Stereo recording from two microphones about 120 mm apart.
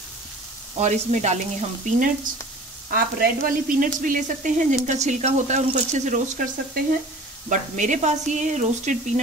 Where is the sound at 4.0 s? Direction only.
90° right.